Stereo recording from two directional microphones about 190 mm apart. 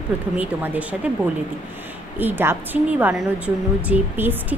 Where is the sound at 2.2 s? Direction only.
10° right (ahead or behind).